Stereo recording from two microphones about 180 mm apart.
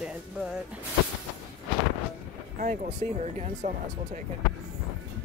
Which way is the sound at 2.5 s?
45° right (ahead or behind).